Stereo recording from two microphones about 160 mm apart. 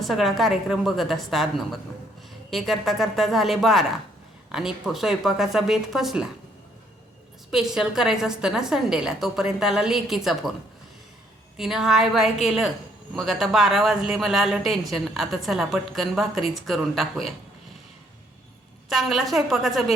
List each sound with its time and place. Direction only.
0.0 s a woman's voice: centre (ahead or behind)
7.5 s a woman's voice: centre (ahead or behind)
11.5 s a woman's voice: centre (ahead or behind)
18.9 s a woman's voice: centre (ahead or behind)